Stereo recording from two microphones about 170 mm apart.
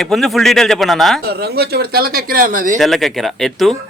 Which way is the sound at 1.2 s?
70° right (ahead or behind).